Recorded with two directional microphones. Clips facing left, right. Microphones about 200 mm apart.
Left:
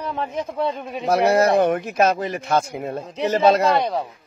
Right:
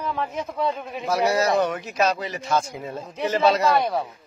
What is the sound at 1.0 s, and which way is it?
A man's voice, 60° left (ahead or behind).